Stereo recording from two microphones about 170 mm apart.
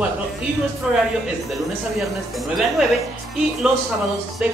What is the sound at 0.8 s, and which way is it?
Speech, centre (ahead or behind).